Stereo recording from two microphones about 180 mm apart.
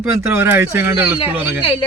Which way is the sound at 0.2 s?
15° right (ahead or behind).